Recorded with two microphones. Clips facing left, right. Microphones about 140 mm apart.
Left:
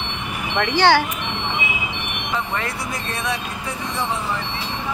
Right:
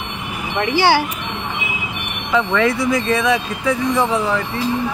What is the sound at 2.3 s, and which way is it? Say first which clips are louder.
Speech: right 10 dB; 90° right.